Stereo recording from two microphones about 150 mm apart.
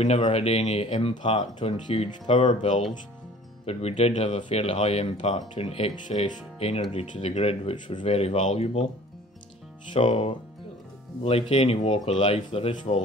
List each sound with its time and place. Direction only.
0.0 s speech: 40° left (ahead or behind)
9.9 s speech: 40° left (ahead or behind)